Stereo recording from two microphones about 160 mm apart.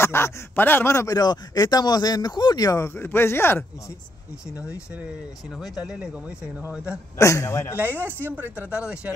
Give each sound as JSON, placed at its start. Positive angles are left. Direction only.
{"t": 0.0, "sound": "speech", "side_deg": 15}
{"t": 5.6, "sound": "speech", "side_deg": -5}
{"t": 7.2, "sound": "speech", "side_deg": 20}
{"t": 8.0, "sound": "speech", "side_deg": -15}